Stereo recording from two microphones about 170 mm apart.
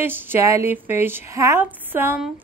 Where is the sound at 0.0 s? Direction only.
10° right (ahead or behind).